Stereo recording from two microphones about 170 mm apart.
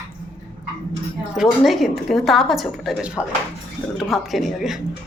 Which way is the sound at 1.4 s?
Centre (ahead or behind).